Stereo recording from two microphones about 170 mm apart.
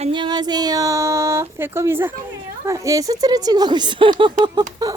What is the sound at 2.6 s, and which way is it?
A woman's voice, 20° right (ahead or behind).